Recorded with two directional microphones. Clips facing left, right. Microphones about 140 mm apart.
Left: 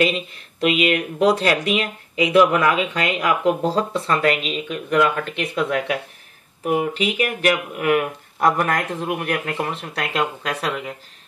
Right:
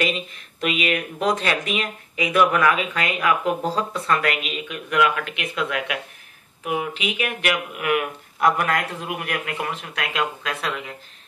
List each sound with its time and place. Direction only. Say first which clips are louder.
0.7 s speech: left 5 dB; 35° left (ahead or behind)